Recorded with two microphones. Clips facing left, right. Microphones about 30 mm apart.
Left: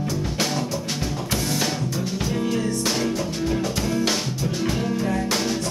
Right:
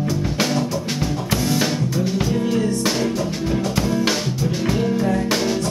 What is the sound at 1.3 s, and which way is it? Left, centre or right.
Music, centre.